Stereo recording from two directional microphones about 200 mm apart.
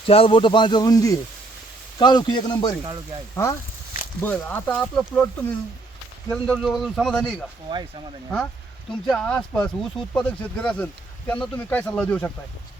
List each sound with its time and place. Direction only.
0.1 s a man's voice: 25° left (ahead or behind); by 7.3 s 5° left (ahead or behind)
7.7 s speech: 25° right (ahead or behind)
8.9 s a man's voice: 5° left (ahead or behind)